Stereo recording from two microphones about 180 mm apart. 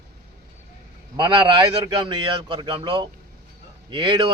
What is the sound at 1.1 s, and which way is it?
Speech, 25° right (ahead or behind).